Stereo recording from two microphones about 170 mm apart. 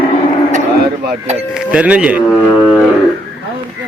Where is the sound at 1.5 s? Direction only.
5° right (ahead or behind).